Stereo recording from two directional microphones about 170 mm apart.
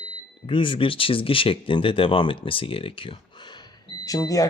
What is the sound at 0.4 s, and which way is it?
Speech, 30° left (ahead or behind).